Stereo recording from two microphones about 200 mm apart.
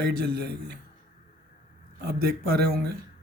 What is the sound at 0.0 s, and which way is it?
Speech, 55° right (ahead or behind).